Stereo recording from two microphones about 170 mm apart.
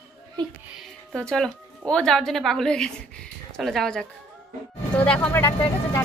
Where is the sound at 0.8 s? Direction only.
5° left (ahead or behind).